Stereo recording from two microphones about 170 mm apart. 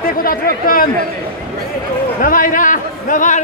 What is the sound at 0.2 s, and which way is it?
Speech, 55° left (ahead or behind).